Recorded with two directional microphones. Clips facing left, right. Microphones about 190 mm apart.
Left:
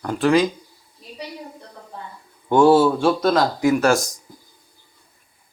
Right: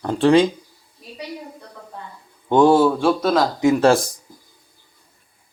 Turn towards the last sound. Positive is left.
turn(degrees=-30)  # may be behind; listen again after turning